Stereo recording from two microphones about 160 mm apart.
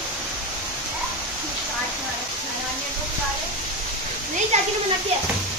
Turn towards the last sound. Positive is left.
turn(degrees=-45)  # may be behind; listen again after turning